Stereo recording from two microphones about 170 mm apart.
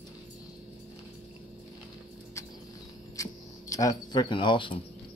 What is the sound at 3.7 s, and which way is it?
Speech, 20° left (ahead or behind).